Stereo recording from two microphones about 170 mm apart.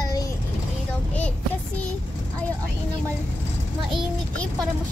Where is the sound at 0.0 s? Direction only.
20° left (ahead or behind).